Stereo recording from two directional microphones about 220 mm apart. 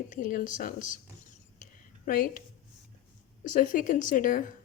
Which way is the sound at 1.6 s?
40° left (ahead or behind).